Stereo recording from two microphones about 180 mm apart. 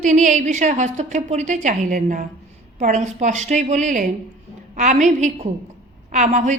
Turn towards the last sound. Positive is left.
turn(degrees=-40)  # may be behind; listen again after turning